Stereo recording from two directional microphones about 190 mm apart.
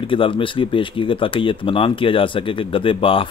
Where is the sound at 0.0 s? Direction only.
25° left (ahead or behind).